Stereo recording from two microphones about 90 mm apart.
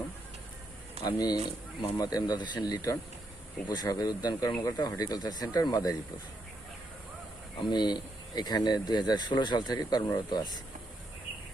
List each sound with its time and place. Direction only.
1.0 s speech: 50° left (ahead or behind)
7.5 s speech: 55° left (ahead or behind)